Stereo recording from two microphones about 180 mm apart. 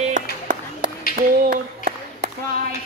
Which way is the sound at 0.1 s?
45° right (ahead or behind).